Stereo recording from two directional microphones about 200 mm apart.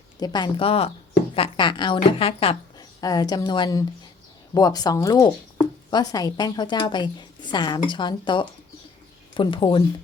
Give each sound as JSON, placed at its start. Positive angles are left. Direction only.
{"t": 0.2, "sound": "a woman's voice", "side_deg": 20}